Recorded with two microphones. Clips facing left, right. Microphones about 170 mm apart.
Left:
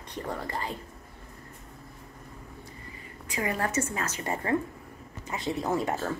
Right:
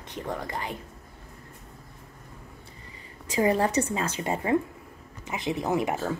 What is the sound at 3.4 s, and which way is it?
Speech, 30° right (ahead or behind).